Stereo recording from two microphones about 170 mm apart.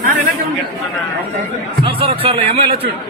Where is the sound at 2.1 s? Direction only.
35° right (ahead or behind).